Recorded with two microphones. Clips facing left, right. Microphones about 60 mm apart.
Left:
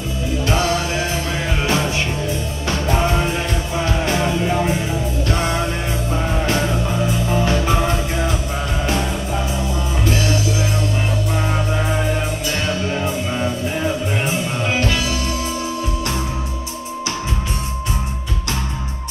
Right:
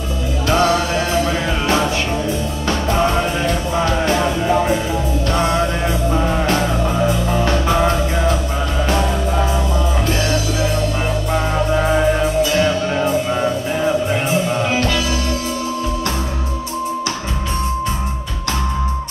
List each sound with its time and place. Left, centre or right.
0.5 s music: right
2.7 s music: right
6.5 s music: right
14.7 s music: left